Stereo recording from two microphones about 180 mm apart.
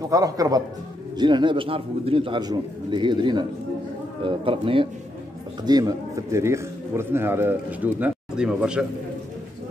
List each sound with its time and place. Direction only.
0.1 s a man's voice: 20° right (ahead or behind)